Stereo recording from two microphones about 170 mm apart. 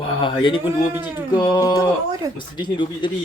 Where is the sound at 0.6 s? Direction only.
10° right (ahead or behind).